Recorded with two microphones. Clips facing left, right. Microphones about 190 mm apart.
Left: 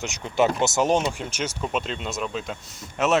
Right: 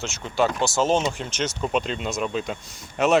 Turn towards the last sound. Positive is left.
turn(degrees=0)  # may be behind; listen again after turning